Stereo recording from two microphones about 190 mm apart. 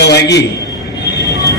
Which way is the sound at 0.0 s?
60° left (ahead or behind).